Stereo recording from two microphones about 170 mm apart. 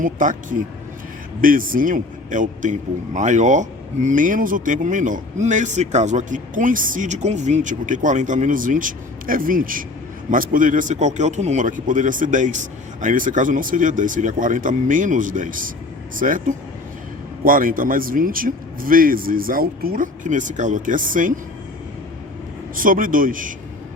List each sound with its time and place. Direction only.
0.0 s a man's voice: 50° right (ahead or behind)
1.4 s a man's voice: 55° right (ahead or behind)
22.7 s a man's voice: 55° right (ahead or behind)